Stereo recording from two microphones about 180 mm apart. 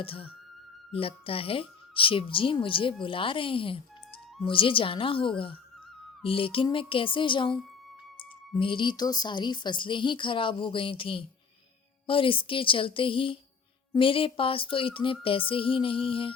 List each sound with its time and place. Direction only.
0.0 s speech: 30° left (ahead or behind)
8.5 s speech: 30° left (ahead or behind)